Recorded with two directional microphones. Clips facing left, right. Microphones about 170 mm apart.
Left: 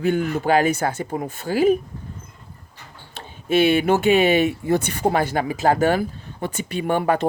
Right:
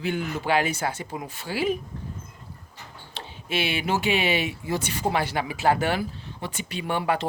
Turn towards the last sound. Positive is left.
turn(degrees=50)  # may be behind; listen again after turning